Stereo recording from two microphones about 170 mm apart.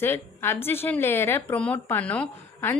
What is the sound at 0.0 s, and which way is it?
A woman's voice, 15° left (ahead or behind).